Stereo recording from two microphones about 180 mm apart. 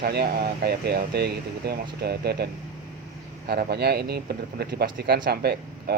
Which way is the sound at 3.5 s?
60° right (ahead or behind).